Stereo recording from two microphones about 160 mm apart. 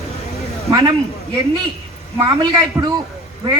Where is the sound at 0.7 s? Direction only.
20° right (ahead or behind).